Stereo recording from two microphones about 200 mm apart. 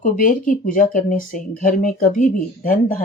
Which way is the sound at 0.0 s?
40° left (ahead or behind).